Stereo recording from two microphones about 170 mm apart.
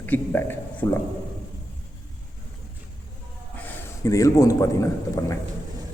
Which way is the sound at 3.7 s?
20° left (ahead or behind).